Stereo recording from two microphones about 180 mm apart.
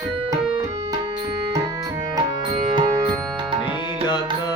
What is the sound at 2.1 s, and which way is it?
Music, 25° right (ahead or behind).